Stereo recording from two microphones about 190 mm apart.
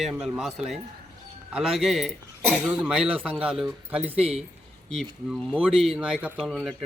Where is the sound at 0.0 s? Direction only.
5° right (ahead or behind).